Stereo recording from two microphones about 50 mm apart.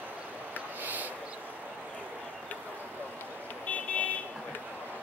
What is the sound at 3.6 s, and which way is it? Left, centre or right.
Car alarm, left.